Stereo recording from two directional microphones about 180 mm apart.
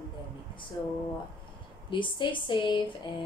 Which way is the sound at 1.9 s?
25° left (ahead or behind).